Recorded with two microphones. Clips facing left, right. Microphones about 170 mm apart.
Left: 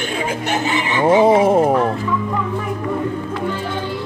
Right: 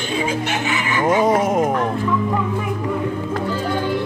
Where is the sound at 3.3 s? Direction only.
40° right (ahead or behind).